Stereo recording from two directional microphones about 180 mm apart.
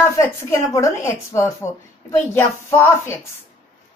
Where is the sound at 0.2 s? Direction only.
15° left (ahead or behind).